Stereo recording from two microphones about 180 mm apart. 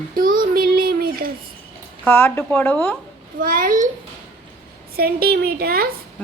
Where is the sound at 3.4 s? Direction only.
50° right (ahead or behind).